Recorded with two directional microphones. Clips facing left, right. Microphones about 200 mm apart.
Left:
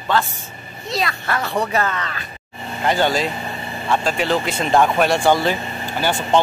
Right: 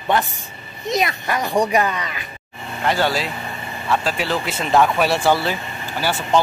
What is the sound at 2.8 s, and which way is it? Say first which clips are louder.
A man's voice: left 2 dB; centre (ahead or behind).